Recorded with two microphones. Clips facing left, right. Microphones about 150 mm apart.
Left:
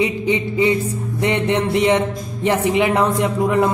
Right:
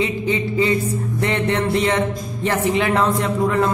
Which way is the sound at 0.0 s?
20° left (ahead or behind).